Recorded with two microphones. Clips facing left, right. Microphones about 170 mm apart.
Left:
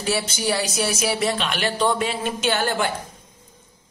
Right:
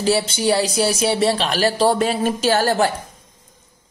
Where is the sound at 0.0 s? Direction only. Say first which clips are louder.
Right 6 dB; 30° right (ahead or behind).